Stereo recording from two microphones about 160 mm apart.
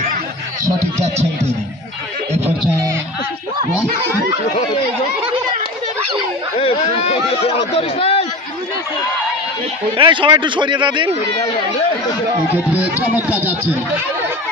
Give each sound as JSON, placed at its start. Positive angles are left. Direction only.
{"t": 1.0, "sound": "speech", "side_deg": -45}
{"t": 6.6, "sound": "a sound", "side_deg": 40}
{"t": 9.9, "sound": "a man's voice", "side_deg": -30}
{"t": 12.5, "sound": "speech", "side_deg": -10}